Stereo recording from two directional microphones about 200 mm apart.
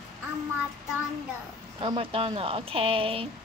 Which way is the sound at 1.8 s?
25° right (ahead or behind).